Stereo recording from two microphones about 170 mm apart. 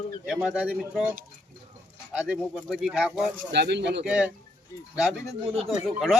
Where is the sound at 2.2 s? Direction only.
5° right (ahead or behind).